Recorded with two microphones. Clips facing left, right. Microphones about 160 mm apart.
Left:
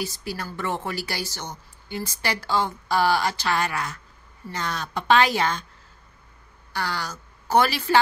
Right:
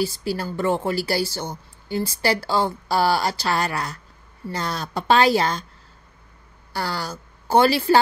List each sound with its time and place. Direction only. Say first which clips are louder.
0.0 s a woman's voice: right 6 dB; 30° right (ahead or behind)
6.7 s speech: right 2 dB; 35° right (ahead or behind)